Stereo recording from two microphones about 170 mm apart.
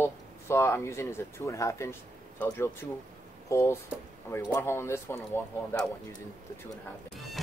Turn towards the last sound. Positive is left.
turn(degrees=15)  # may be behind; listen again after turning